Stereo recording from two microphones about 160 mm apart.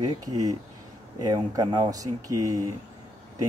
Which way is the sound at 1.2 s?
25° right (ahead or behind).